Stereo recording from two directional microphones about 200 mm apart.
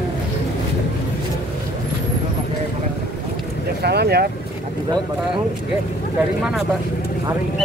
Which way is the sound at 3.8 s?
55° right (ahead or behind).